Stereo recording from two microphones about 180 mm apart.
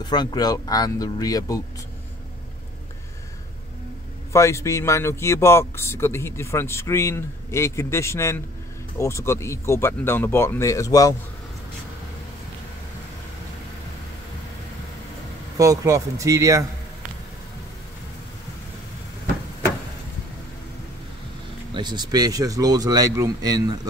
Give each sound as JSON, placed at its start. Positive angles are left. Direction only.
{"t": 0.0, "sound": "speech", "side_deg": 25}
{"t": 4.3, "sound": "speech", "side_deg": 15}
{"t": 15.5, "sound": "a man's voice", "side_deg": -20}
{"t": 21.7, "sound": "speech", "side_deg": -25}